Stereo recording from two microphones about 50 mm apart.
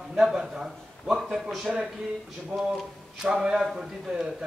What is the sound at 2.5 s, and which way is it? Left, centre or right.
Speech, right.